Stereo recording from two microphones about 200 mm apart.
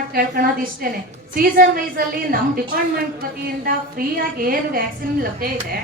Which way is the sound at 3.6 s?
45° right (ahead or behind).